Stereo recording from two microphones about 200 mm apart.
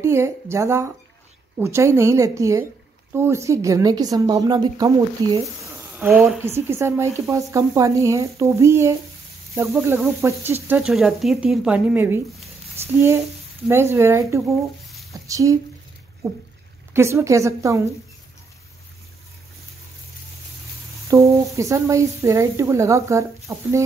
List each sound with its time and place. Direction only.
0.0 s a woman's voice: 15° right (ahead or behind)
16.2 s a sound: 15° right (ahead or behind)
16.9 s a woman's voice: 15° right (ahead or behind)
21.1 s a woman's voice: 15° right (ahead or behind)